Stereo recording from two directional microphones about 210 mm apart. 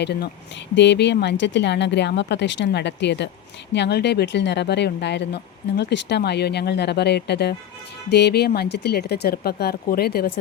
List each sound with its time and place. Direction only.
0.0 s speech: 50° left (ahead or behind)